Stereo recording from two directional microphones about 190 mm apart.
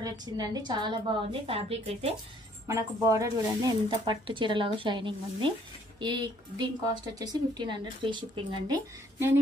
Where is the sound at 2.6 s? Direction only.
15° right (ahead or behind).